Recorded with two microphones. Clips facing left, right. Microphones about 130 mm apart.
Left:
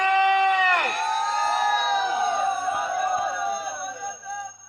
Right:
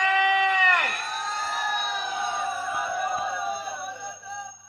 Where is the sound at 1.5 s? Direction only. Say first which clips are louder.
Left 7 dB; 80° left.